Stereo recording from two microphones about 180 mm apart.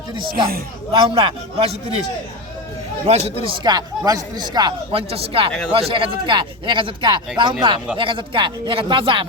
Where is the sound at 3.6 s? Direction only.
20° right (ahead or behind).